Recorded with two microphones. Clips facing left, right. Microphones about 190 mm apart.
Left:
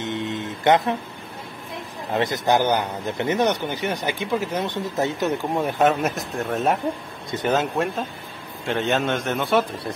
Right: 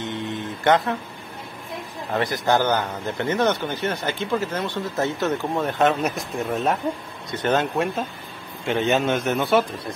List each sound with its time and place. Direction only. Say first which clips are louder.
0.0 s guitar: left 1 dB; 20° left (ahead or behind)
2.1 s a man's voice: left 1 dB; 20° left (ahead or behind); by 9.7 s 5° right (ahead or behind)